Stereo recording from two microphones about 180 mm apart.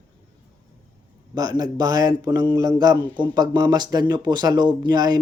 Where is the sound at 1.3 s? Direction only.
20° right (ahead or behind).